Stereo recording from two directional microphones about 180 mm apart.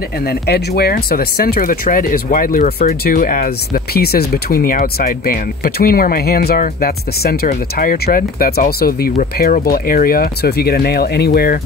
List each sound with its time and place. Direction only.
0.3 s speech: 60° left (ahead or behind)